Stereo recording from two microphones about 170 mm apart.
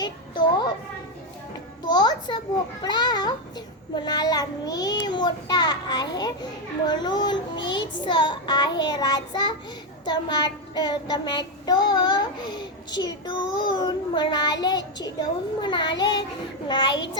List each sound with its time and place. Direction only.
0.0 s a child's voice: 25° left (ahead or behind)
1.9 s a child's voice: 25° left (ahead or behind)
2.8 s child singing: 25° left (ahead or behind)